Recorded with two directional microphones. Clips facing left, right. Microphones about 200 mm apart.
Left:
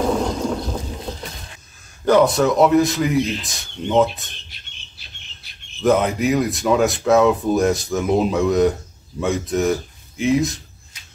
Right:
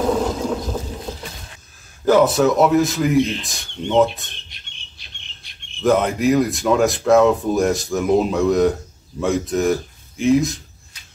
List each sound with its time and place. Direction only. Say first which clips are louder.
0.0 s a sound: right 1 dB; 5° right (ahead or behind)
2.0 s speech: right 1 dB; centre (ahead or behind)
5.4 s speech: even; centre (ahead or behind)